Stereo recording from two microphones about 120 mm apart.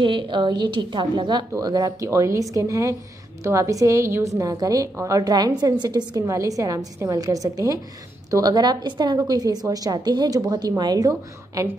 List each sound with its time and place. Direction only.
0.0 s a woman's voice: 40° right (ahead or behind)
1.5 s a woman's voice: 30° right (ahead or behind)